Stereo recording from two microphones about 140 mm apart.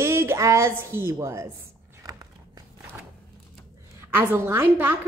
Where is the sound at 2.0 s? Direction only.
25° right (ahead or behind).